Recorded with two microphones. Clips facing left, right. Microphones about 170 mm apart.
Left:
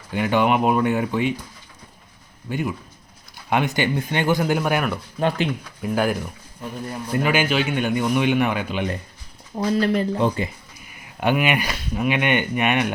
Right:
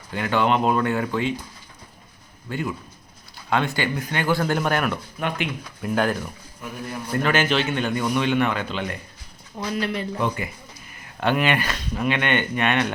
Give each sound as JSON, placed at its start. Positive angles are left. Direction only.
{"t": 0.1, "sound": "a man's voice", "side_deg": 15}
{"t": 2.5, "sound": "a man's voice", "side_deg": 15}
{"t": 9.6, "sound": "speech", "side_deg": 35}
{"t": 11.2, "sound": "a man's voice", "side_deg": 10}